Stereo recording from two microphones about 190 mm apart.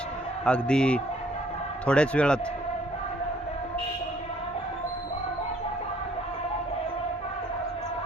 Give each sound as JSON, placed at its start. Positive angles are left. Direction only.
{"t": 0.4, "sound": "a man's voice", "side_deg": 5}